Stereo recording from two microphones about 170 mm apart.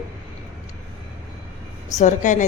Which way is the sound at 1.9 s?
45° left (ahead or behind).